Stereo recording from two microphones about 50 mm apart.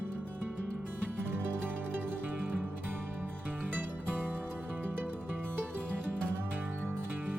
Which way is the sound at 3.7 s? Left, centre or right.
Right.